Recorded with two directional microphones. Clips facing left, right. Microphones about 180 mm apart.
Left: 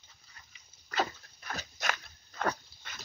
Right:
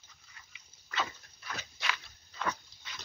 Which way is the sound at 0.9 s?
40° left (ahead or behind).